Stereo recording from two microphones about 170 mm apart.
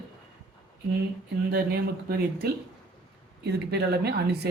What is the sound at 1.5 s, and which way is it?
Speech, 65° right (ahead or behind).